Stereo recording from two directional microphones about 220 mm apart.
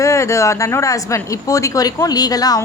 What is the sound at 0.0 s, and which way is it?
A woman's voice, 15° left (ahead or behind).